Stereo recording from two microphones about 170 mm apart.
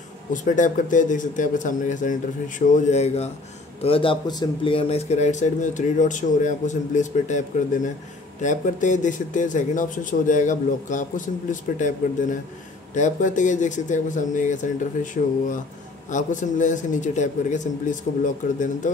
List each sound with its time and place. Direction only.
0.3 s a man's voice: 50° left (ahead or behind)
12.9 s a man's voice: 45° left (ahead or behind)
16.1 s a man's voice: 45° left (ahead or behind)